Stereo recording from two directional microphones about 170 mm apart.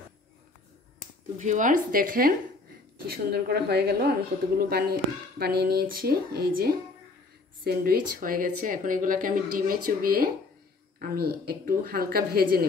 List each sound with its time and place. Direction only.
1.4 s a woman's voice: 45° right (ahead or behind)